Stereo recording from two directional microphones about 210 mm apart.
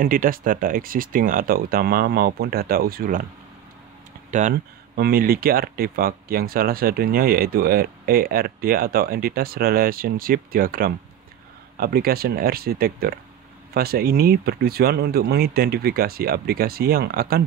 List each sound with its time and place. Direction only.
0.0 s speech: 40° right (ahead or behind)
4.3 s speech: 35° right (ahead or behind)